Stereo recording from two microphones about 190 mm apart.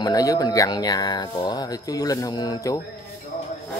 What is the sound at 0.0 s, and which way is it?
Speech, 20° left (ahead or behind).